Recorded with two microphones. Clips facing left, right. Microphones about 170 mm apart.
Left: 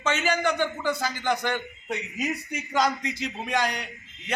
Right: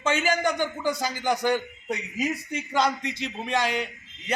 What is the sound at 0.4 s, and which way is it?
A man's voice, 10° right (ahead or behind).